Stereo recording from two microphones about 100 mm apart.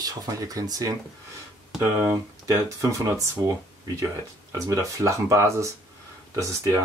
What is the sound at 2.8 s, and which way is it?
Speech, 35° right (ahead or behind).